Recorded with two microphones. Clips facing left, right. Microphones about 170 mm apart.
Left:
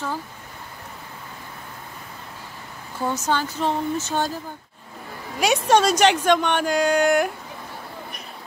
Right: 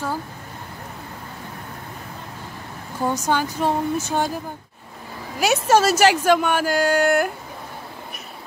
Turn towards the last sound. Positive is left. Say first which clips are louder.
# even
turn(degrees=-5)  # may be behind; listen again after turning